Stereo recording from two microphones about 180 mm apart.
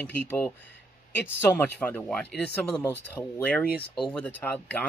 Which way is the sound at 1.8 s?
10° left (ahead or behind).